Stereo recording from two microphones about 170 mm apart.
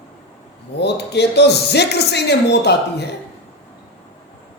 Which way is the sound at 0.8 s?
80° left.